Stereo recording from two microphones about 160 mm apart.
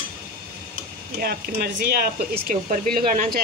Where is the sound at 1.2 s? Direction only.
75° right (ahead or behind).